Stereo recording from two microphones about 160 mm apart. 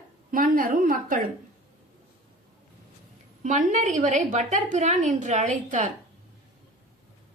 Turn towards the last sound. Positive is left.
turn(degrees=-50)  # may be behind; listen again after turning